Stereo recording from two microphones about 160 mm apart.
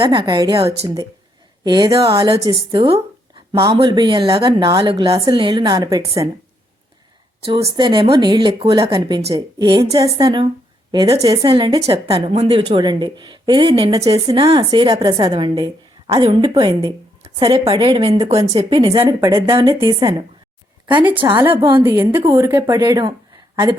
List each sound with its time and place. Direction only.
0.0 s a woman's voice: 30° right (ahead or behind)
3.5 s a woman's voice: 20° right (ahead or behind)
7.4 s a woman's voice: 25° right (ahead or behind)
17.4 s a woman's voice: 35° right (ahead or behind)
18.8 s a woman's voice: 35° right (ahead or behind)
21.7 s a woman's voice: 15° right (ahead or behind)